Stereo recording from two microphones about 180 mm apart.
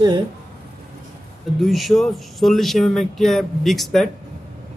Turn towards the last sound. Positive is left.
turn(degrees=0)  # may be behind; listen again after turning